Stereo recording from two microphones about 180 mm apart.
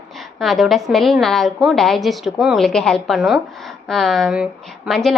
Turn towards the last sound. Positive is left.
turn(degrees=0)  # may be behind; listen again after turning